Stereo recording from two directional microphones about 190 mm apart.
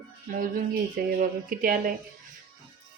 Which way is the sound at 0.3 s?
45° right (ahead or behind).